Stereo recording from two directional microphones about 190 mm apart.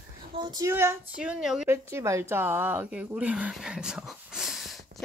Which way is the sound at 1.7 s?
15° right (ahead or behind).